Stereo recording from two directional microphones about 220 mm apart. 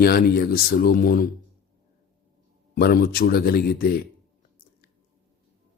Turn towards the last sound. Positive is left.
turn(degrees=45)  # may be behind; listen again after turning